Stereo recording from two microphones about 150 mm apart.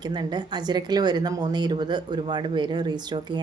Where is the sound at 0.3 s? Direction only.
30° right (ahead or behind).